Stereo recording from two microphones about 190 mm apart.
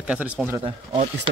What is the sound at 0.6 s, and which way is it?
Speech, 30° right (ahead or behind).